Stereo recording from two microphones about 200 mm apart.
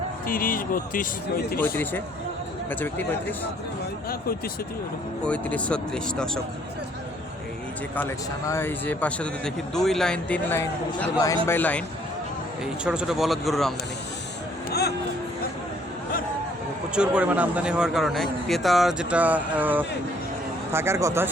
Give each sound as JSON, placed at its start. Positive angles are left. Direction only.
{"t": 0.3, "sound": "speech", "side_deg": 45}
{"t": 1.5, "sound": "speech", "side_deg": 10}
{"t": 5.2, "sound": "a man's voice", "side_deg": 5}
{"t": 8.4, "sound": "speech", "side_deg": 10}
{"t": 12.8, "sound": "a man's voice", "side_deg": -5}
{"t": 14.7, "sound": "speech", "side_deg": 55}
{"t": 16.9, "sound": "a man's voice", "side_deg": -5}